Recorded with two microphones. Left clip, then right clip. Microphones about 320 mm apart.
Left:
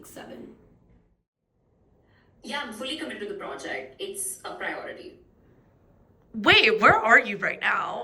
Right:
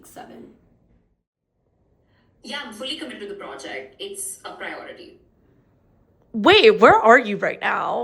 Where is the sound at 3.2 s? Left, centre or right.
Centre.